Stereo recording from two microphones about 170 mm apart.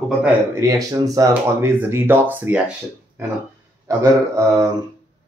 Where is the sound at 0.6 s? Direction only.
20° right (ahead or behind).